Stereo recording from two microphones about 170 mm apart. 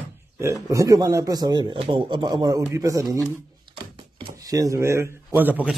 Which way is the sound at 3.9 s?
25° right (ahead or behind).